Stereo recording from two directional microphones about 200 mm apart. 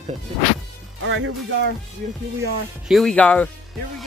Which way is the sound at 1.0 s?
70° right (ahead or behind).